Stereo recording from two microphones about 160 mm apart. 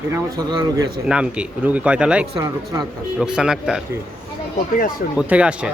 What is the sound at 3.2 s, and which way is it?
Speech, 5° right (ahead or behind).